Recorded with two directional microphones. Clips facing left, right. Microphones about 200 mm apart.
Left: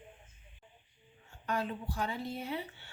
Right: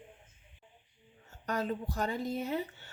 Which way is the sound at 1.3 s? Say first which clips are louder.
Right 2 dB; 40° right (ahead or behind).